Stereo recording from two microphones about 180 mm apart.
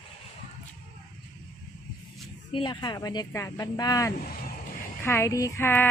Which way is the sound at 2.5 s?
25° left (ahead or behind).